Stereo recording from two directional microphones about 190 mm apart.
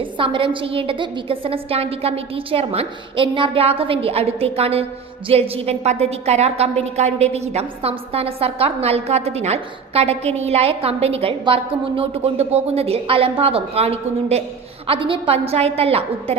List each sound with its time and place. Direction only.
0.0 s a woman's voice: 25° right (ahead or behind)